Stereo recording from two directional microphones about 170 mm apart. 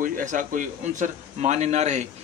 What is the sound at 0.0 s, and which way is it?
A man's voice, 50° right (ahead or behind).